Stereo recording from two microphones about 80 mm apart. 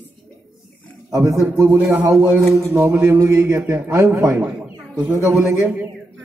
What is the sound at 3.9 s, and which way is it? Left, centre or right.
Speech, right.